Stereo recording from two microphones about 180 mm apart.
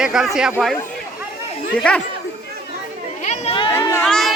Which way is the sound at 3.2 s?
40° left (ahead or behind).